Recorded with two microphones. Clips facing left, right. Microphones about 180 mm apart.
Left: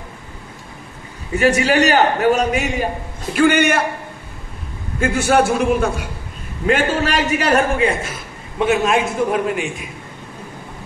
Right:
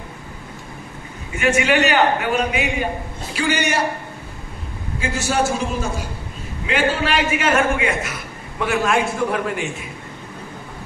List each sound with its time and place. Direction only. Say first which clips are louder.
1.3 s a man's voice: left 3 dB; 35° left (ahead or behind)
3.3 s a man's voice: left 7 dB; 55° left (ahead or behind)
5.0 s a man's voice: left 6 dB; 55° left (ahead or behind)
6.6 s a man's voice: left 3 dB; 45° left (ahead or behind); by 9.7 s 20° left (ahead or behind)